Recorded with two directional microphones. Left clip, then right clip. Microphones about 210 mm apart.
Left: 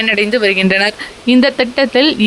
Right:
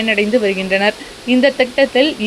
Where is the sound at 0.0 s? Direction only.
50° left (ahead or behind).